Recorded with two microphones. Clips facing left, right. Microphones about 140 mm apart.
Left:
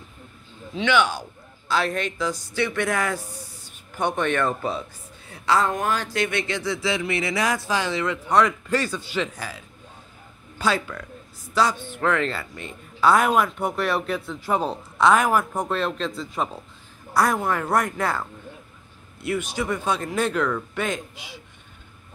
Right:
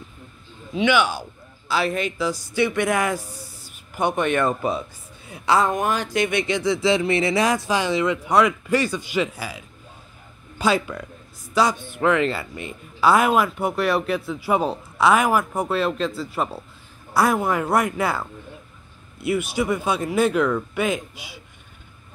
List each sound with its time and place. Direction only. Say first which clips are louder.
0.7 s speech: right 2 dB; 10° right (ahead or behind)
19.2 s speech: right 4 dB; 10° right (ahead or behind)